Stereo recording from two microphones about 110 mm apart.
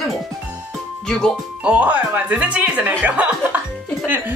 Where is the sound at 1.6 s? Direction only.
15° right (ahead or behind).